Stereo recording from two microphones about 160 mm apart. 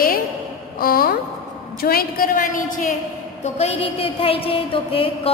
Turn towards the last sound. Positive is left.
turn(degrees=35)  # may be behind; listen again after turning